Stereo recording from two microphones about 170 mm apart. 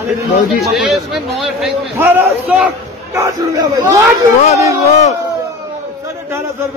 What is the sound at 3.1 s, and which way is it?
Speech, 15° right (ahead or behind).